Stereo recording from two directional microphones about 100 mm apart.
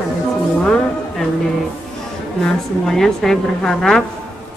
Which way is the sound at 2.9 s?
5° left (ahead or behind).